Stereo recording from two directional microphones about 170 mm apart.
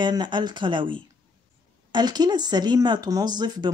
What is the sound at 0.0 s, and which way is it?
Speech, 25° right (ahead or behind).